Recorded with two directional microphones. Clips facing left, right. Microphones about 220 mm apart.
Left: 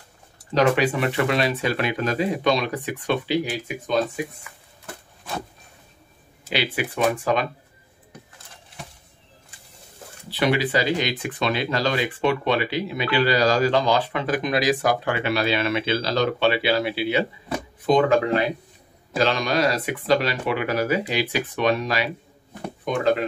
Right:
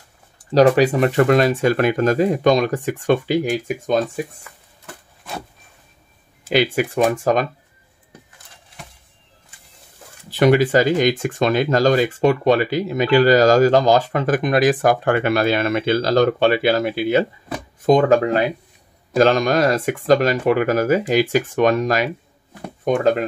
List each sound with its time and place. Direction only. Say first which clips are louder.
0.6 s speech: right 6 dB; 40° right (ahead or behind)
6.5 s speech: right 8 dB; 45° right (ahead or behind)
10.3 s speech: right 7 dB; 45° right (ahead or behind)